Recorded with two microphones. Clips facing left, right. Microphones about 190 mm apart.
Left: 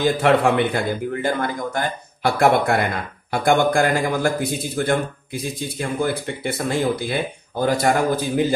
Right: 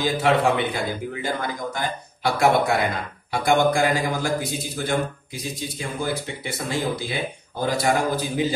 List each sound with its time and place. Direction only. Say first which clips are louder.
0.0 s a man's voice: left 3 dB; 55° left (ahead or behind)